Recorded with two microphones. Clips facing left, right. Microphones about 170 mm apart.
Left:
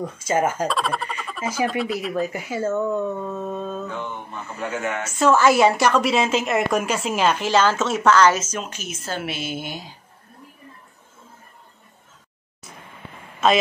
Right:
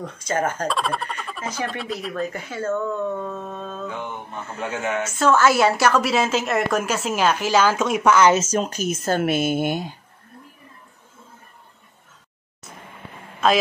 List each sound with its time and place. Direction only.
0.0 s a woman's voice: 5° left (ahead or behind)
2.6 s speech: 15° left (ahead or behind)
5.2 s a woman's voice: centre (ahead or behind); by 8.4 s 15° right (ahead or behind)
8.4 s speech: 35° right (ahead or behind); by 9.9 s 55° right (ahead or behind)